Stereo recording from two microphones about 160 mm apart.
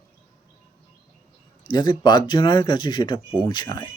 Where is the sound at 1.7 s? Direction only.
25° left (ahead or behind).